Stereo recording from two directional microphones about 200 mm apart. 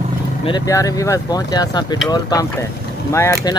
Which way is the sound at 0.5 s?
20° left (ahead or behind).